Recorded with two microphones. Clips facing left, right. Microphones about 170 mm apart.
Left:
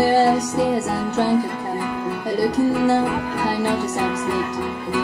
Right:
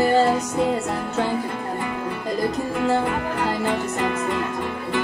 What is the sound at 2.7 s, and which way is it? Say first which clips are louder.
Music: left 3 dB; centre (ahead or behind).